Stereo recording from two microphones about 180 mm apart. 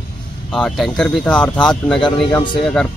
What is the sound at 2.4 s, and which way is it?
Speech, 25° left (ahead or behind).